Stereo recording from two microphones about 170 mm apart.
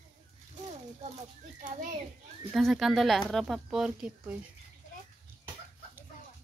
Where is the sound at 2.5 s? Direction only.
Centre (ahead or behind).